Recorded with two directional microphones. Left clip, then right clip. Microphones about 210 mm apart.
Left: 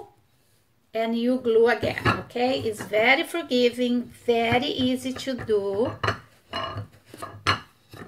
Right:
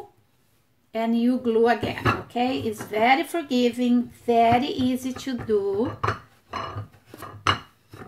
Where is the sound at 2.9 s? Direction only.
15° right (ahead or behind).